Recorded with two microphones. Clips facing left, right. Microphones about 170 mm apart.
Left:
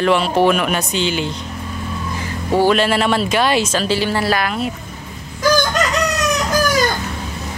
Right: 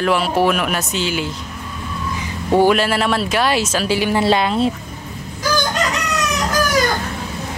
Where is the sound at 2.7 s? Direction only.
Centre (ahead or behind).